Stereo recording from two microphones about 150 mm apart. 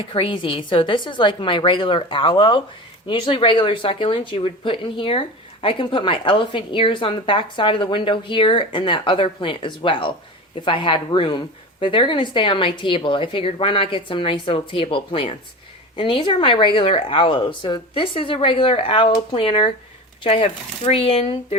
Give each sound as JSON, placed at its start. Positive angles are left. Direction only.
{"t": 0.0, "sound": "a woman's voice", "side_deg": 35}